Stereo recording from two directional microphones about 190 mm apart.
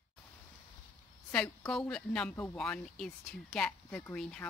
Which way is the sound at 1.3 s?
5° left (ahead or behind).